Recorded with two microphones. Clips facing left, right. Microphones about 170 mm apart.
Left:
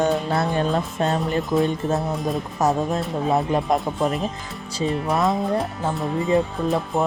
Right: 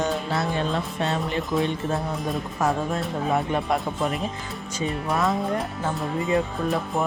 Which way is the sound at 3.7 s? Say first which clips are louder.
Left 3 dB; centre (ahead or behind).